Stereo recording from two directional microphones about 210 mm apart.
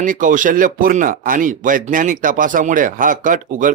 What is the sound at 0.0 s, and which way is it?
Speech, 40° right (ahead or behind).